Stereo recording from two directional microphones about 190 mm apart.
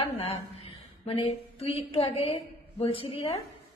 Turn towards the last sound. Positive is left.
turn(degrees=30)  # may be behind; listen again after turning